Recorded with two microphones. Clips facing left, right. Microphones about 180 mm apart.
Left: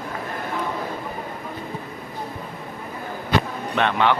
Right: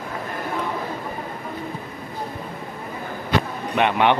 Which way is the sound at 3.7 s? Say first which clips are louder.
Right 2 dB; 15° right (ahead or behind).